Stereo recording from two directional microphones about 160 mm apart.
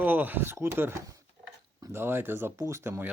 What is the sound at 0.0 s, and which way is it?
Speech, 10° right (ahead or behind).